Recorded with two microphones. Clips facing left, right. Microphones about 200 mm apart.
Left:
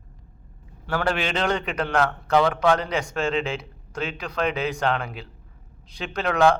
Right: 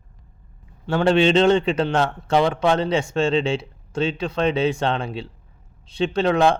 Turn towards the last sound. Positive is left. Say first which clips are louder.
# right 2 dB
turn(degrees=-25)  # may be behind; listen again after turning